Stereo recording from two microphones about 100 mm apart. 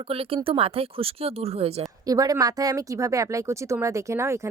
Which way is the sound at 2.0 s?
40° right (ahead or behind).